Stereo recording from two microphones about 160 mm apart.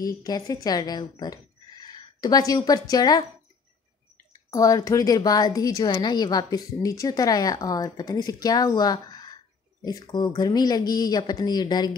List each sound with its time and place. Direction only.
0.0 s a woman's voice: 25° left (ahead or behind)
4.5 s a woman's voice: 20° left (ahead or behind)